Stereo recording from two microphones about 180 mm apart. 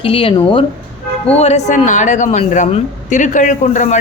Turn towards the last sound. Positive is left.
turn(degrees=45)  # may be behind; listen again after turning